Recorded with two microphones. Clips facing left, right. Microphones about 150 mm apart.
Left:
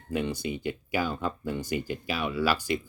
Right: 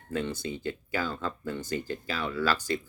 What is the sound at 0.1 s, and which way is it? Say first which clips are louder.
Speech: left 2 dB; 15° left (ahead or behind).